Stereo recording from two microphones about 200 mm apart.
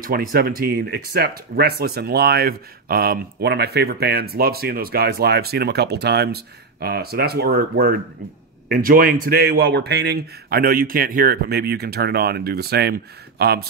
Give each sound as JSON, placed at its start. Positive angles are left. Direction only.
{"t": 0.0, "sound": "speech", "side_deg": -50}